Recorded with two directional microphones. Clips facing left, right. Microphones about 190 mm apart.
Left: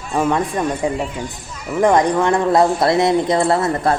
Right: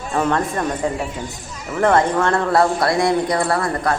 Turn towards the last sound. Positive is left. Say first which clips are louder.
# left 3 dB
turn(degrees=25)  # may be behind; listen again after turning